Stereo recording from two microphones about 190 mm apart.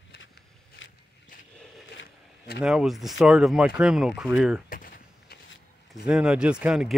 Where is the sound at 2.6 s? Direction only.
Centre (ahead or behind).